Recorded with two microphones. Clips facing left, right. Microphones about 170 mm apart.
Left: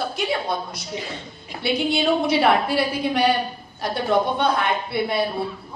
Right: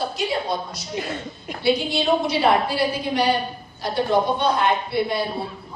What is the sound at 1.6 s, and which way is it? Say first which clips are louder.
A woman's voice: even; 60° left (ahead or behind).